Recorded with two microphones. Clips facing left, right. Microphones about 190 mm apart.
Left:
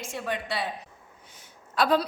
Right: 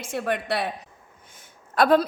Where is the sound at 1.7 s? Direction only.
55° right (ahead or behind).